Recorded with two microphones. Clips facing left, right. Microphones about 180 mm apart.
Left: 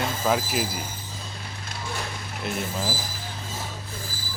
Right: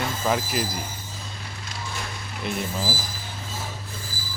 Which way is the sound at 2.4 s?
Centre (ahead or behind).